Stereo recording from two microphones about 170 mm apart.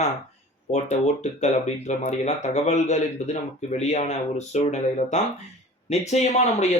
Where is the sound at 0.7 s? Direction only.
40° left (ahead or behind).